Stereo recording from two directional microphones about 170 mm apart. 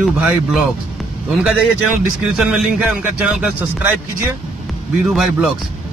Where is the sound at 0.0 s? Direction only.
Centre (ahead or behind).